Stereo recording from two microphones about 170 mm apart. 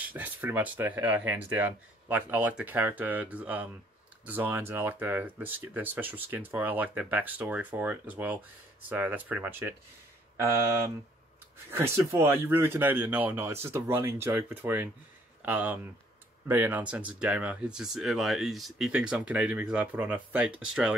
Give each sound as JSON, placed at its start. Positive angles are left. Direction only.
{"t": 0.0, "sound": "speech", "side_deg": -10}
{"t": 11.7, "sound": "speech", "side_deg": -15}